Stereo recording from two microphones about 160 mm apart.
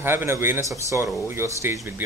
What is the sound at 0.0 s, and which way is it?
Speech, 15° right (ahead or behind).